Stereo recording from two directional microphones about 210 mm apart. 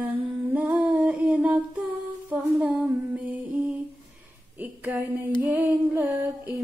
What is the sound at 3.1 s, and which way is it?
Music, 5° right (ahead or behind).